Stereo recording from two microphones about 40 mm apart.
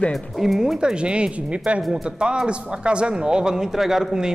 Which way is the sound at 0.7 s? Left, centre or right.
Right.